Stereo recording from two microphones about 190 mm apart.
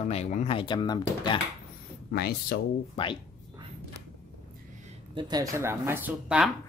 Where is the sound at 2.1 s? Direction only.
55° left (ahead or behind).